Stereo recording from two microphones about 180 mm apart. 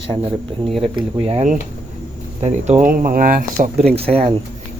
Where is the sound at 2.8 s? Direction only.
50° right (ahead or behind).